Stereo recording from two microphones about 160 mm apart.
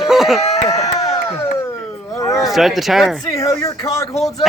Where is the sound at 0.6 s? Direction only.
20° left (ahead or behind).